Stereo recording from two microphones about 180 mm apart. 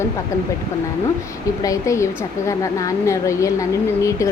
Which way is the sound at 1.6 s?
20° left (ahead or behind).